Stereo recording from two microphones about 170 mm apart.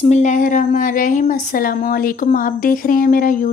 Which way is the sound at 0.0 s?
45° left (ahead or behind).